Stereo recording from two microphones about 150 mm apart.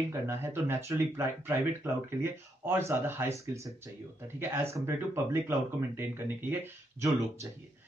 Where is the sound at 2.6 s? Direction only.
15° right (ahead or behind).